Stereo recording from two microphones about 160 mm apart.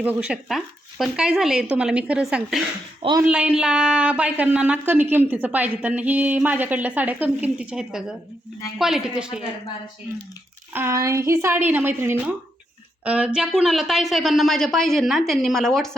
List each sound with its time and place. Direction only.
0.0 s speech: 10° right (ahead or behind)
3.0 s speech: 25° right (ahead or behind)
3.2 s speech: 10° right (ahead or behind)
10.8 s speech: 20° right (ahead or behind); by 16.0 s 5° left (ahead or behind)